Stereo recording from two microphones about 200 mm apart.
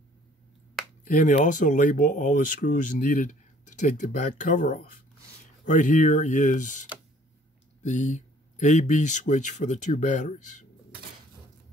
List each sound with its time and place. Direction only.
1.0 s speech: 40° left (ahead or behind)